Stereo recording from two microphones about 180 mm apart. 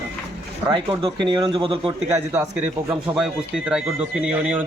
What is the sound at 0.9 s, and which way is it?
Speech, 25° right (ahead or behind).